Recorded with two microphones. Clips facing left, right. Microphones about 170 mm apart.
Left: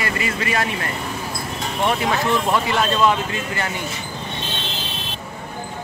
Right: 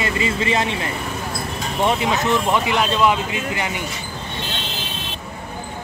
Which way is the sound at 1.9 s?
20° right (ahead or behind).